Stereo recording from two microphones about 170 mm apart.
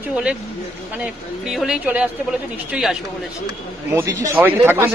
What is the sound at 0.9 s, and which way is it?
Speech, 5° right (ahead or behind).